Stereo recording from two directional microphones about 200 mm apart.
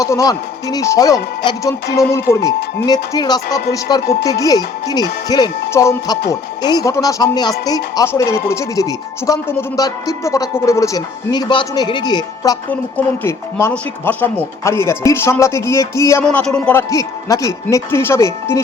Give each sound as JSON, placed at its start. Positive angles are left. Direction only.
{"t": 0.0, "sound": "speech", "side_deg": 15}
{"t": 16.9, "sound": "speech", "side_deg": 15}